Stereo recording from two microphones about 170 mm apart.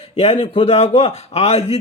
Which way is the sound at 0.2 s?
35° left (ahead or behind).